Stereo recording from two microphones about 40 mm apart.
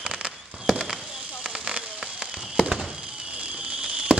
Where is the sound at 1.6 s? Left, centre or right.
Centre.